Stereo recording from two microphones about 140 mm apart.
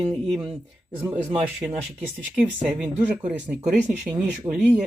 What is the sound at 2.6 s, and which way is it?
Speech, 10° right (ahead or behind).